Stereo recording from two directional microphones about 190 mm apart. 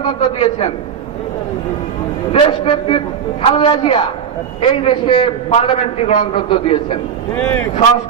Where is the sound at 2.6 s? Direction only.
25° left (ahead or behind).